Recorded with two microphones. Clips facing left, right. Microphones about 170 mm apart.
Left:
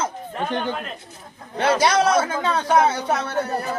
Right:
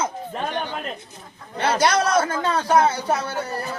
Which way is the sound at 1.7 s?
Centre (ahead or behind).